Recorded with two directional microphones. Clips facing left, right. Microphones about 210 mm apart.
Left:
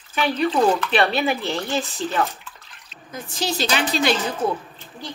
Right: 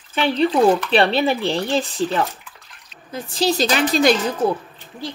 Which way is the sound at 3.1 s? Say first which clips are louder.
Right 6 dB; 35° right (ahead or behind).